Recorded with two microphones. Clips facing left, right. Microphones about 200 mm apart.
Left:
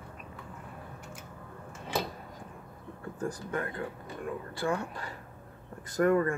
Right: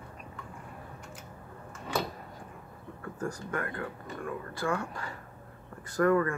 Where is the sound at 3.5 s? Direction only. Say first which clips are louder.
Left 1 dB; 20° left (ahead or behind).